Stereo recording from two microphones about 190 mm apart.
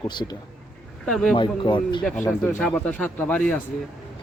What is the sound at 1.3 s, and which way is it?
Speech, 25° left (ahead or behind).